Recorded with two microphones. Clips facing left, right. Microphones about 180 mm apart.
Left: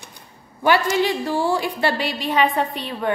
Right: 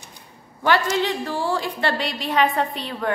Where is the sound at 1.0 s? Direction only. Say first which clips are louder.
Left 3 dB; 10° left (ahead or behind).